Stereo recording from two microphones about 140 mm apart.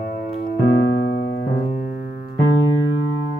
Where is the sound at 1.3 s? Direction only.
65° left (ahead or behind).